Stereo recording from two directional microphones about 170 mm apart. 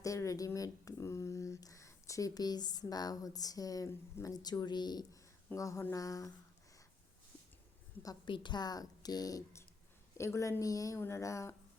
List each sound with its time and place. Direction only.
0.0 s speech: 20° left (ahead or behind)
8.0 s speech: 25° left (ahead or behind)